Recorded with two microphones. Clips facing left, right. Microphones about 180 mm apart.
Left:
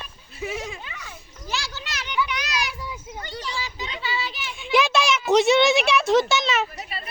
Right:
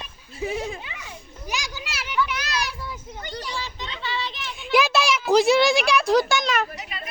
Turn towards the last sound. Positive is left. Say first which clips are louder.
# left 1 dB
turn(degrees=35)  # may be behind; listen again after turning